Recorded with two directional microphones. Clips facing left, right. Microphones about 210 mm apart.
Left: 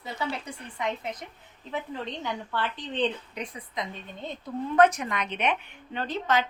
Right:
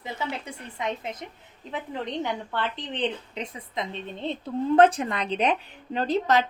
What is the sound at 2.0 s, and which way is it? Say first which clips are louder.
A woman's voice: right 4 dB; 20° right (ahead or behind).